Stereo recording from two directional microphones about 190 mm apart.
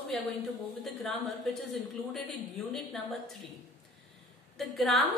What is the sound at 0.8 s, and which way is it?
A woman's voice, centre (ahead or behind).